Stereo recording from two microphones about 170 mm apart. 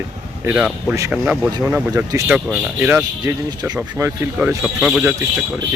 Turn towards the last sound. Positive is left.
turn(degrees=-5)  # may be behind; listen again after turning